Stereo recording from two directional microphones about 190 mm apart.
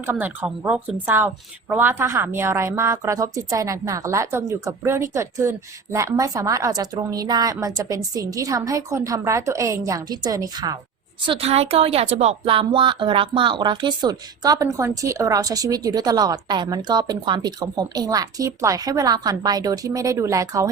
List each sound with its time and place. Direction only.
0.0 s a woman's voice: 10° right (ahead or behind)
11.3 s a woman's voice: 30° right (ahead or behind); by 20.7 s 15° right (ahead or behind)